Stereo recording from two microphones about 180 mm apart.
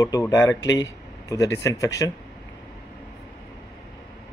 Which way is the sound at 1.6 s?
20° left (ahead or behind).